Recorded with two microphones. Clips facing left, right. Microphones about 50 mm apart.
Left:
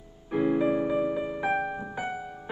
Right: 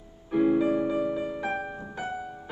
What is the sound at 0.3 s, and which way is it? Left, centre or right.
Keyboard, centre.